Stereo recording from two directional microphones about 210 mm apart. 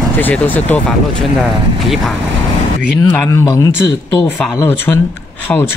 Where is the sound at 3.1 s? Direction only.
10° left (ahead or behind).